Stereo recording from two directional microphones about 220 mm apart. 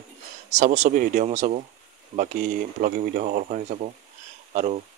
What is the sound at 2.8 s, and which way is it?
Speech, 40° right (ahead or behind).